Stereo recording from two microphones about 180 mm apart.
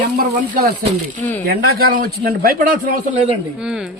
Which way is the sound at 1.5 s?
60° right (ahead or behind).